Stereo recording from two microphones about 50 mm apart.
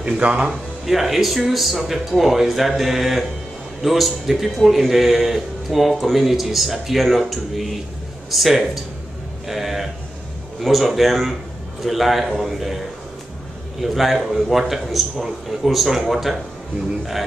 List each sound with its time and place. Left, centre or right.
0.0 s speech: right
0.8 s speech: centre
13.7 s speech: centre